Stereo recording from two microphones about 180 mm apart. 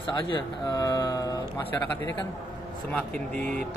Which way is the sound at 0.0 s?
25° left (ahead or behind).